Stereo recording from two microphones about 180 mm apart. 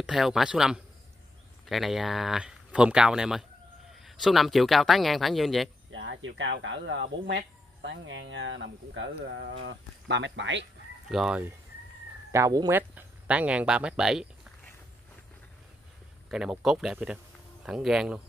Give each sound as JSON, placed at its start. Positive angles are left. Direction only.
{"t": 0.0, "sound": "speech", "side_deg": -5}
{"t": 5.9, "sound": "speech", "side_deg": -90}
{"t": 11.1, "sound": "speech", "side_deg": -5}
{"t": 12.3, "sound": "speech", "side_deg": -20}
{"t": 16.3, "sound": "speech", "side_deg": -5}